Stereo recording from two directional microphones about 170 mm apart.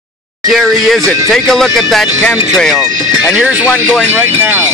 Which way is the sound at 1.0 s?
20° right (ahead or behind).